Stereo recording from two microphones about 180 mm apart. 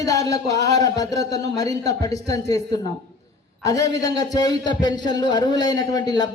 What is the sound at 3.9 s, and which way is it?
A man's voice, 20° left (ahead or behind).